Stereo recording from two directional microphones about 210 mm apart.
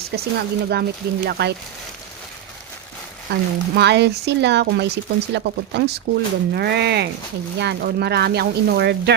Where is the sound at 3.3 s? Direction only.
50° right (ahead or behind).